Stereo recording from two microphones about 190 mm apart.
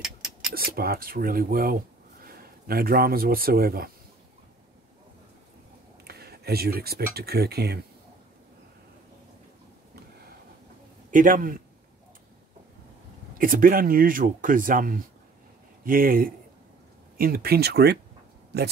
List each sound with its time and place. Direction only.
0.0 s a sound: 5° right (ahead or behind)
0.6 s a man's voice: 55° right (ahead or behind)
6.0 s speech: 55° right (ahead or behind)
11.1 s speech: 45° right (ahead or behind)
13.4 s speech: 45° right (ahead or behind)